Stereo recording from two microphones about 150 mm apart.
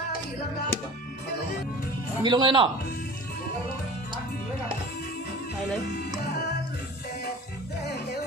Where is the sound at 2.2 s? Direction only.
30° right (ahead or behind).